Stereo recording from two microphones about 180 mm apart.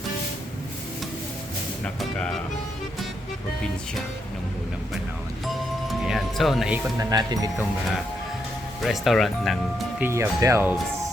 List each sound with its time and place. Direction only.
1.8 s speech: 5° left (ahead or behind)
5.9 s music: centre (ahead or behind)
7.0 s speech: 20° right (ahead or behind)
8.8 s speech: centre (ahead or behind)
10.0 s speech: 15° right (ahead or behind)